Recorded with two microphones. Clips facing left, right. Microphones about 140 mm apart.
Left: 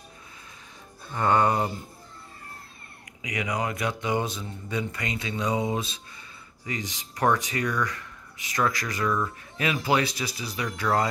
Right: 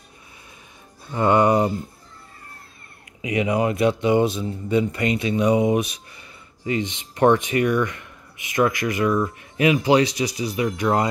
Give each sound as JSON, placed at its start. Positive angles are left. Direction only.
{"t": 1.1, "sound": "music", "side_deg": -15}
{"t": 3.2, "sound": "speech", "side_deg": -25}